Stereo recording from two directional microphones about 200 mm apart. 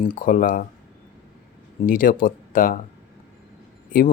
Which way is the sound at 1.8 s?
45° left (ahead or behind).